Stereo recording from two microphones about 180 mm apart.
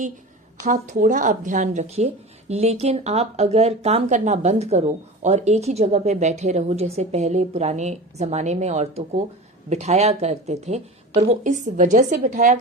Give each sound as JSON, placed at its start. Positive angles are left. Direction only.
{"t": 0.6, "sound": "a woman's voice", "side_deg": -45}